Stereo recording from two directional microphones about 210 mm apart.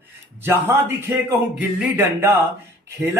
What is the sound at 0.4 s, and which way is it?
A man's voice, 10° right (ahead or behind).